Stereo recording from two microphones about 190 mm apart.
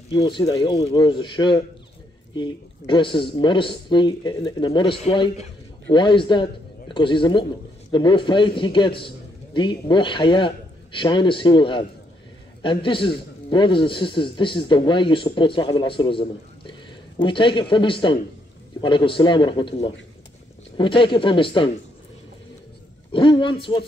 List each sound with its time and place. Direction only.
0.2 s speech: 20° left (ahead or behind)
2.9 s speech: 25° left (ahead or behind)
23.1 s speech: 25° left (ahead or behind)